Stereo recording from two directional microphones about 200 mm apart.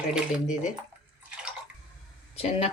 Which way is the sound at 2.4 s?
30° left (ahead or behind).